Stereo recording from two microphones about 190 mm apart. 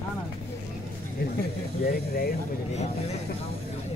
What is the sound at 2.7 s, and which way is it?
Speech, 35° left (ahead or behind).